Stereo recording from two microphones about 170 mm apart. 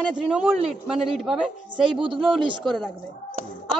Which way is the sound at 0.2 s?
5° right (ahead or behind).